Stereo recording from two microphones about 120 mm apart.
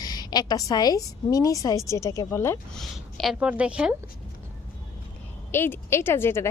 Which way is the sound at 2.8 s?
Centre (ahead or behind).